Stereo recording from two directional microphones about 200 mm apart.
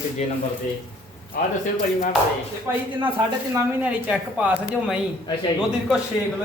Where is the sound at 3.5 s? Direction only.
10° right (ahead or behind).